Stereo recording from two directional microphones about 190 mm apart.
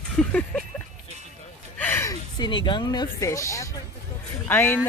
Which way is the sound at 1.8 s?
10° left (ahead or behind).